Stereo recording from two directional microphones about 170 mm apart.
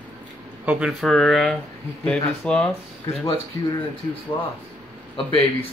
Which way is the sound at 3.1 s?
35° left (ahead or behind).